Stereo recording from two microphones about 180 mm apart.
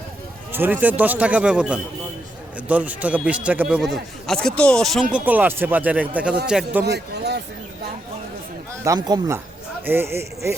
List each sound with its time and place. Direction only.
0.5 s a man's voice: 10° right (ahead or behind)
5.1 s a man's voice: 10° right (ahead or behind)
6.8 s a sound: 65° right (ahead or behind)
8.8 s a man's voice: 20° right (ahead or behind)